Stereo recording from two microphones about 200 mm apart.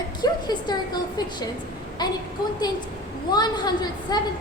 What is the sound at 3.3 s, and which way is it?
Speech, 20° left (ahead or behind).